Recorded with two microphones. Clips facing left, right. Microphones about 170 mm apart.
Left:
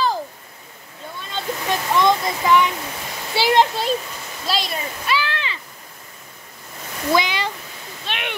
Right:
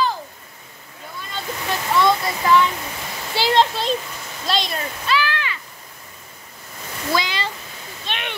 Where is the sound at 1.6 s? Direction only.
15° left (ahead or behind).